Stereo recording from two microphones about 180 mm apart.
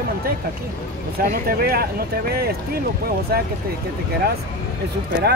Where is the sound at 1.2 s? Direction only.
55° right (ahead or behind).